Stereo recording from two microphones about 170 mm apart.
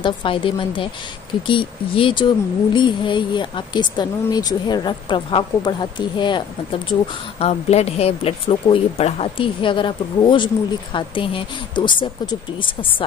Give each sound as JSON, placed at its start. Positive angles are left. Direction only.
{"t": 0.0, "sound": "speech", "side_deg": 30}
{"t": 6.9, "sound": "speech", "side_deg": 40}